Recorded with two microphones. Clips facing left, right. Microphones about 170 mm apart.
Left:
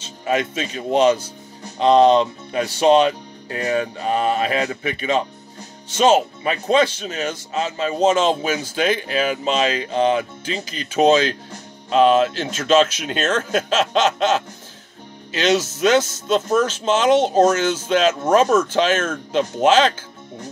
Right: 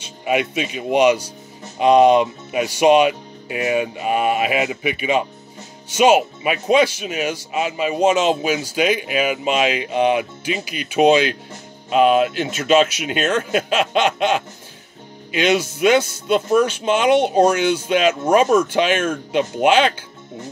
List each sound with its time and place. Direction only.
0.0 s speech: 15° right (ahead or behind)